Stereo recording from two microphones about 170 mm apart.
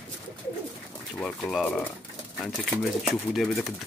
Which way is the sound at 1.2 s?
5° left (ahead or behind).